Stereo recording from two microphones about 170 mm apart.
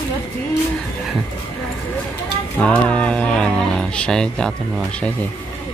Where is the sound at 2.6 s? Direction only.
5° left (ahead or behind).